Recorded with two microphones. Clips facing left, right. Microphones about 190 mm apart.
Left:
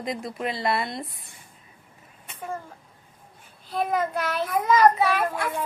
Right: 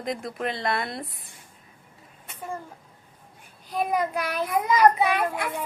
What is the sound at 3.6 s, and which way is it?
A child's voice, 15° right (ahead or behind).